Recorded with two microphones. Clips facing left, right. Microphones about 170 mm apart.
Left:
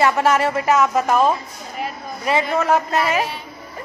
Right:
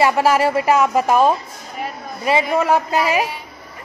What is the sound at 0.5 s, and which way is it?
Speech, 30° right (ahead or behind).